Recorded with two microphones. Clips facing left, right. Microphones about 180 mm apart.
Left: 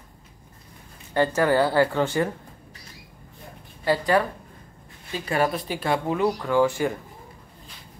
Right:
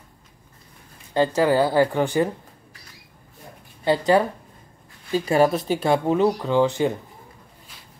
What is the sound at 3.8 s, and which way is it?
Speech, 25° right (ahead or behind).